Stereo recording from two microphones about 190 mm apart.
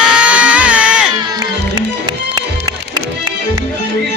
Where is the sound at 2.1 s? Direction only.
20° right (ahead or behind).